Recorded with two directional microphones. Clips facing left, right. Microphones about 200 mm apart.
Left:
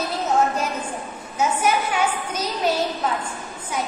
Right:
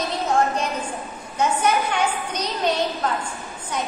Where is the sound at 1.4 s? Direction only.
5° left (ahead or behind).